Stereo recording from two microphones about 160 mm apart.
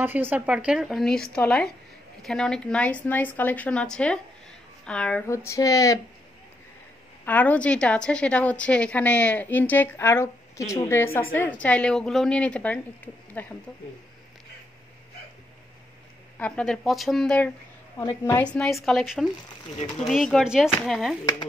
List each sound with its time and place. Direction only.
0.0 s a woman's voice: 10° right (ahead or behind); by 5.2 s 5° left (ahead or behind)
5.3 s a sound: 20° left (ahead or behind)
7.2 s a woman's voice: 10° left (ahead or behind)
16.3 s speech: 5° left (ahead or behind)
17.9 s a woman's voice: 15° left (ahead or behind)
18.4 s speech: 5° left (ahead or behind)
19.7 s speech: 45° left (ahead or behind)
20.1 s speech: centre (ahead or behind)